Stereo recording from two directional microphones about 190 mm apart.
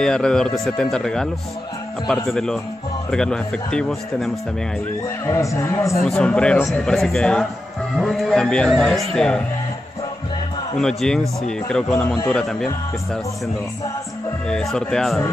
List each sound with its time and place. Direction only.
0.0 s speech: 5° left (ahead or behind)
5.2 s speech: 15° left (ahead or behind)
6.0 s speech: 5° left (ahead or behind)
10.8 s speech: 5° left (ahead or behind)
14.5 s speech: centre (ahead or behind)